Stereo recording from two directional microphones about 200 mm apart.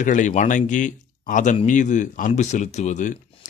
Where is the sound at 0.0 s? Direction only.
40° left (ahead or behind).